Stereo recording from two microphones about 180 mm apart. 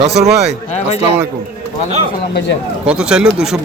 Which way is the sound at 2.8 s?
5° right (ahead or behind).